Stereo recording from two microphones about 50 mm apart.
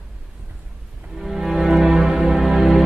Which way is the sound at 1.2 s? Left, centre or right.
Centre.